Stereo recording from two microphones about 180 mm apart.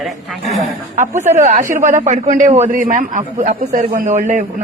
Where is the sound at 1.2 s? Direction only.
40° right (ahead or behind).